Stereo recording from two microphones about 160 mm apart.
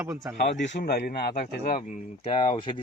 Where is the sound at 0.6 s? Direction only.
80° left.